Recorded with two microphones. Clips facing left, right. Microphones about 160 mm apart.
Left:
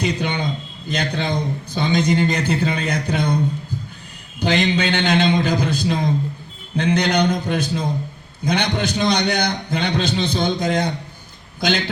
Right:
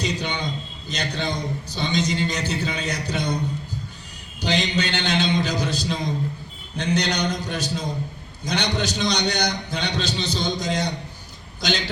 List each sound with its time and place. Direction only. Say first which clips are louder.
0.0 s a sound: left 5 dB; 55° left (ahead or behind)
0.9 s a man's voice: left 5 dB; 55° left (ahead or behind)
4.4 s a man's voice: left 5 dB; 55° left (ahead or behind)